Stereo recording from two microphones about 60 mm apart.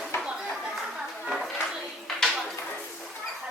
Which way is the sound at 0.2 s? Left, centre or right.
Centre.